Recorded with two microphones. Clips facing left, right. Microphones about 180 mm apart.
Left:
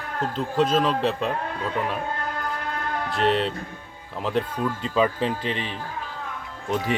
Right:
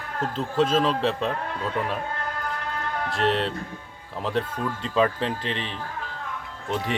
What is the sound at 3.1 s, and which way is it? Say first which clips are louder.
Speech: left 2 dB; centre (ahead or behind).